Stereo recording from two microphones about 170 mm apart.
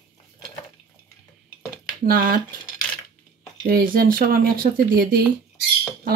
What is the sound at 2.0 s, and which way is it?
Speech, 60° right (ahead or behind).